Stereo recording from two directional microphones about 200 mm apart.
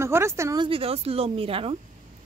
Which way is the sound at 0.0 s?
15° right (ahead or behind).